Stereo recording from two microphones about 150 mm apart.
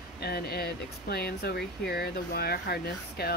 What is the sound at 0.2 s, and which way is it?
Speech, 90° left.